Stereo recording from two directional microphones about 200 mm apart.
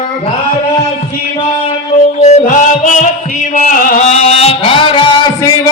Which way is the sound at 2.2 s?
35° left (ahead or behind).